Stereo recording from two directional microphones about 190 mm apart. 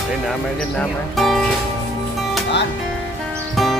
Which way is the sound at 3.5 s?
Centre (ahead or behind).